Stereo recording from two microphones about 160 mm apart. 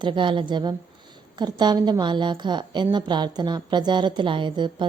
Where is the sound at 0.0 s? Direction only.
30° right (ahead or behind).